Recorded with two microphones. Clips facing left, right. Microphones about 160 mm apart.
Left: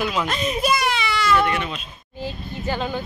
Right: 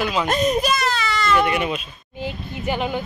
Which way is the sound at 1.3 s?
10° right (ahead or behind).